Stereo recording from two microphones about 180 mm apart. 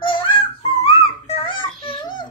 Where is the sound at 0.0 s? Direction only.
30° left (ahead or behind).